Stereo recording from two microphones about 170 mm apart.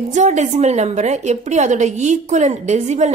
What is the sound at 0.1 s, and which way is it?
A woman's voice, 45° right (ahead or behind).